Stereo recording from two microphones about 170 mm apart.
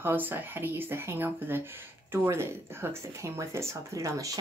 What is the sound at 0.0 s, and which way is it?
Speech, 10° right (ahead or behind).